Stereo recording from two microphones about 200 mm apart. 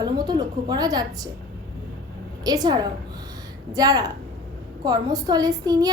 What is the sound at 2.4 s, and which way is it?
A woman's voice, 20° right (ahead or behind).